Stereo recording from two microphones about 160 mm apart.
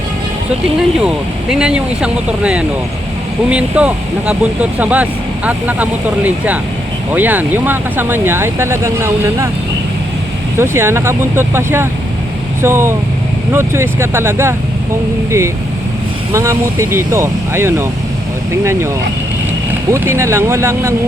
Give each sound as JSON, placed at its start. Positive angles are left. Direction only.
{"t": 1.0, "sound": "speech", "side_deg": -5}
{"t": 10.6, "sound": "speech", "side_deg": -15}
{"t": 16.3, "sound": "speech", "side_deg": -20}
{"t": 19.9, "sound": "speech", "side_deg": -15}